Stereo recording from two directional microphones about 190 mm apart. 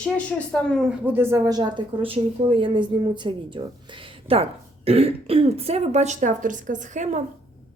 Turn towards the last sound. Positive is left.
turn(degrees=-40)  # may be behind; listen again after turning